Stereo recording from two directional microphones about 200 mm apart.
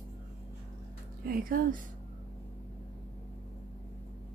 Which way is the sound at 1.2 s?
45° right (ahead or behind).